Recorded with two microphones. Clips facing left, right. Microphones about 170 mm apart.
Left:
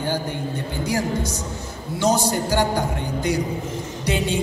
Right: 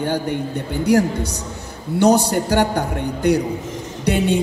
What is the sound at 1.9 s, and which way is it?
Speech, 65° right (ahead or behind).